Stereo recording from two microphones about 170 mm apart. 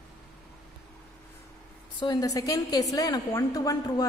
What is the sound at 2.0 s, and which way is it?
A woman's voice, 20° left (ahead or behind).